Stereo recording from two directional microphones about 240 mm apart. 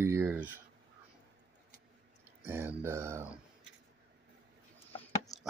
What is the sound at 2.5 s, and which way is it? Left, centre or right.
Speech, centre.